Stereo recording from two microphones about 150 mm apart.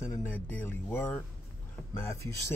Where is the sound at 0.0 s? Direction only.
15° left (ahead or behind).